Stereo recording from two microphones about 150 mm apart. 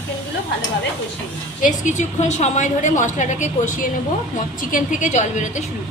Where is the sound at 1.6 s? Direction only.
55° left (ahead or behind).